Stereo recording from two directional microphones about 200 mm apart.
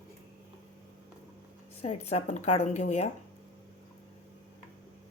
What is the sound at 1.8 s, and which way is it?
Speech, 30° left (ahead or behind).